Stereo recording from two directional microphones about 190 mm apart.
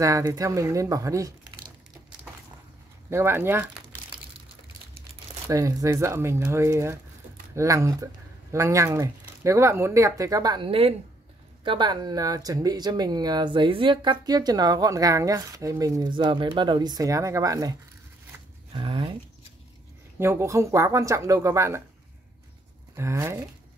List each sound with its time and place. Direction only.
0.0 s speech: 15° right (ahead or behind)
3.1 s speech: 10° right (ahead or behind)
5.5 s speech: 15° right (ahead or behind)
20.2 s speech: 15° right (ahead or behind)
22.9 s speech: 15° right (ahead or behind)